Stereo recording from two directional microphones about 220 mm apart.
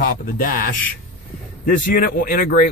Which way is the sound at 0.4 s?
40° left (ahead or behind).